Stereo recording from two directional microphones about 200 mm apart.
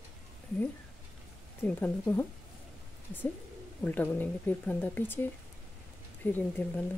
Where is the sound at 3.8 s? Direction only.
10° left (ahead or behind).